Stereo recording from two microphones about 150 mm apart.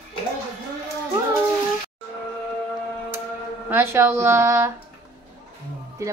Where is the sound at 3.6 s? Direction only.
15° right (ahead or behind).